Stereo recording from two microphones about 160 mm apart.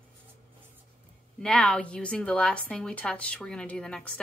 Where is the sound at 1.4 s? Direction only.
5° left (ahead or behind).